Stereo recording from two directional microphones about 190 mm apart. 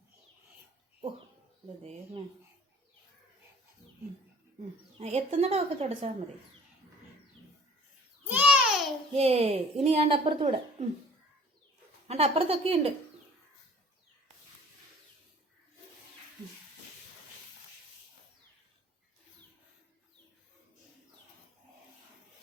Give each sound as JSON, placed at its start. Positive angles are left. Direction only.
{"t": 1.8, "sound": "speech", "side_deg": -35}
{"t": 4.9, "sound": "speech", "side_deg": -30}
{"t": 8.3, "sound": "babbling", "side_deg": -5}
{"t": 9.1, "sound": "speech", "side_deg": -30}
{"t": 12.0, "sound": "speech", "side_deg": -30}